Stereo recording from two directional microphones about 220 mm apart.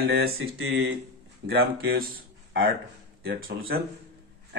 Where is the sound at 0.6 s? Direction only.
65° right (ahead or behind).